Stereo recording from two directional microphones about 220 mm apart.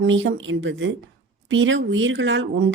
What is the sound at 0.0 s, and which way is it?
Speech, 60° right (ahead or behind).